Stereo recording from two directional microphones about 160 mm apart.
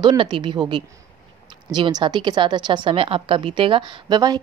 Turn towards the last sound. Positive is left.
turn(degrees=-25)  # may be behind; listen again after turning